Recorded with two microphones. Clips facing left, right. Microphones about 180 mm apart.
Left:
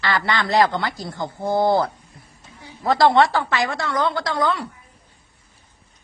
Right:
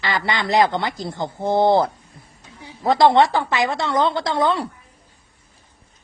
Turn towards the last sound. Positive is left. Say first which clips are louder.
# right 2 dB
turn(degrees=-25)  # may be behind; listen again after turning